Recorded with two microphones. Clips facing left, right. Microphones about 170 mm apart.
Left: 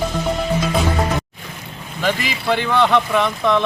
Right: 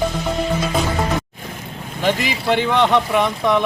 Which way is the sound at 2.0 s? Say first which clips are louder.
Right 1 dB; 20° right (ahead or behind).